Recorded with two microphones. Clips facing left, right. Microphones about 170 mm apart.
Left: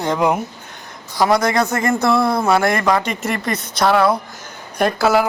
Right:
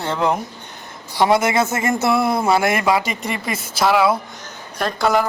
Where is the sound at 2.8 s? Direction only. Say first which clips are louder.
Left 1 dB; 5° right (ahead or behind).